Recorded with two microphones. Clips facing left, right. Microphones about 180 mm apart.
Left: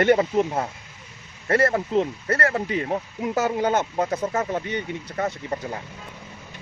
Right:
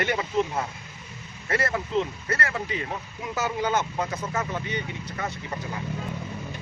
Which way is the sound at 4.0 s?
35° left (ahead or behind).